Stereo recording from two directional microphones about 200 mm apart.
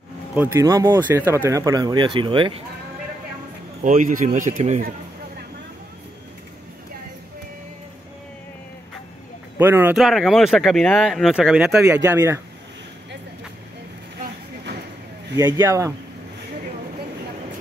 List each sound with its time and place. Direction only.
0.3 s speech: 10° right (ahead or behind); by 2.6 s 25° right (ahead or behind)
3.8 s a man's voice: 40° right (ahead or behind)
9.6 s speech: 10° right (ahead or behind)
15.3 s speech: 15° right (ahead or behind)